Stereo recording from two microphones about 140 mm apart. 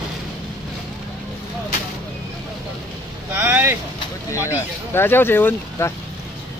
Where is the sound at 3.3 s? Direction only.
15° right (ahead or behind).